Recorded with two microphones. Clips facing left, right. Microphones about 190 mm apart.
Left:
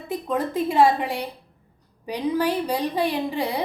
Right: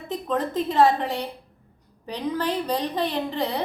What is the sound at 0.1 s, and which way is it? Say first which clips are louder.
A woman's voice: left 1 dB; 10° left (ahead or behind).